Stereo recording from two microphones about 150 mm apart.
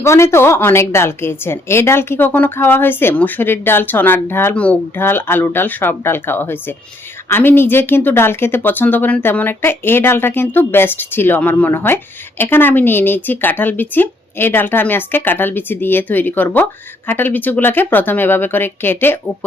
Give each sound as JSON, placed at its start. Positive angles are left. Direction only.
{"t": 0.0, "sound": "a woman's voice", "side_deg": 20}